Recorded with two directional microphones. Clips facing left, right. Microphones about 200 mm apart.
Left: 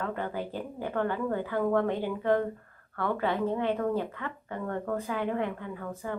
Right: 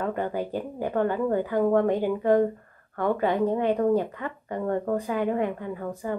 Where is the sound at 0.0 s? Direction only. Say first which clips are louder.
Right 5 dB; 15° right (ahead or behind).